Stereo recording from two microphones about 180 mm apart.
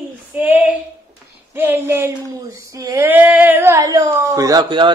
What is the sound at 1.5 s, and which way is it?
A woman's voice, 10° right (ahead or behind).